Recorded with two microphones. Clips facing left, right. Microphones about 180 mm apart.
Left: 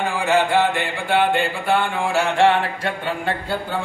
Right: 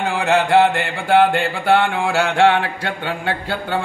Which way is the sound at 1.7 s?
70° right (ahead or behind).